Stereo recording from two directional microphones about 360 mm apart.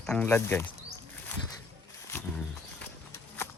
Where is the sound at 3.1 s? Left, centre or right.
Centre.